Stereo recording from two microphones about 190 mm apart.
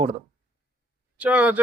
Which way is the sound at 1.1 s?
10° right (ahead or behind).